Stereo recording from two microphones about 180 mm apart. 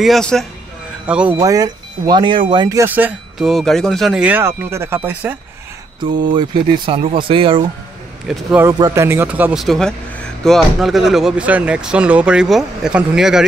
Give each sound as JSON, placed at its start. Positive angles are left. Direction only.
{"t": 0.0, "sound": "speech", "side_deg": 0}
{"t": 1.4, "sound": "speech", "side_deg": -20}
{"t": 6.3, "sound": "speech", "side_deg": -30}
{"t": 8.3, "sound": "speech", "side_deg": -10}